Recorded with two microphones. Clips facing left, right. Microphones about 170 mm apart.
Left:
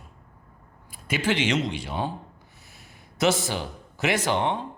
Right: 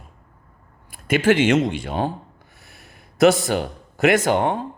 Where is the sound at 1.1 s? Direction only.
50° right (ahead or behind).